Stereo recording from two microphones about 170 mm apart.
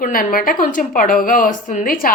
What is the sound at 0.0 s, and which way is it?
A woman's voice, 55° left (ahead or behind).